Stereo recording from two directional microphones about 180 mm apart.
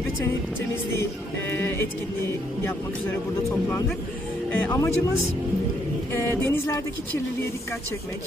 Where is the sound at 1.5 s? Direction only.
15° left (ahead or behind).